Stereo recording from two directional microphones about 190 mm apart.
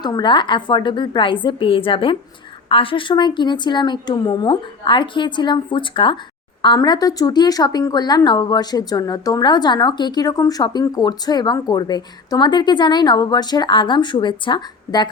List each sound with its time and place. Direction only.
0.0 s speech: 20° left (ahead or behind)